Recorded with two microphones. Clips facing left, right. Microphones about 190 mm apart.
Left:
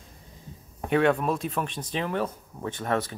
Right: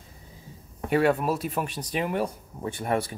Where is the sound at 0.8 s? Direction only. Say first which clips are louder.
Even; 5° right (ahead or behind).